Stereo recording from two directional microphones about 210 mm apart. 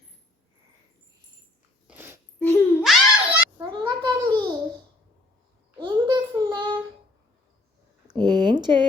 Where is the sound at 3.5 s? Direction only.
20° right (ahead or behind).